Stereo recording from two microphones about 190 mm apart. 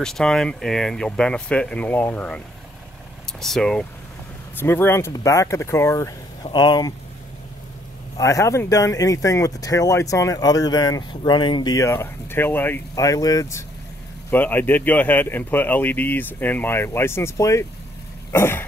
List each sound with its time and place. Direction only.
0.0 s speech: 5° left (ahead or behind); by 6.9 s 25° left (ahead or behind)
8.2 s speech: 15° left (ahead or behind)